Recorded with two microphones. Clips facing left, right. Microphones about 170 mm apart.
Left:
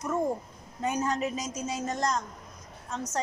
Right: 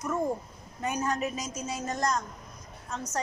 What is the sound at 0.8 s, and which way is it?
A woman's voice, 20° left (ahead or behind).